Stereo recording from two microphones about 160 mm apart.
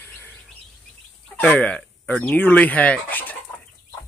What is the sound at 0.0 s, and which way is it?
Bird, 10° left (ahead or behind).